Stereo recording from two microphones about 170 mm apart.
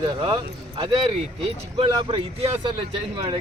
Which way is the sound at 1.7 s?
35° right (ahead or behind).